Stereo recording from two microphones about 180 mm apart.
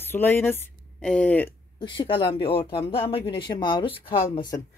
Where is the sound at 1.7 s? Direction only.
30° left (ahead or behind).